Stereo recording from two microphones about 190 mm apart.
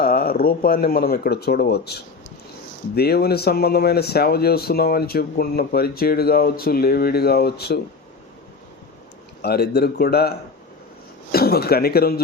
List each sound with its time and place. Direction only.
0.0 s speech: 50° left (ahead or behind)
9.4 s speech: 55° left (ahead or behind)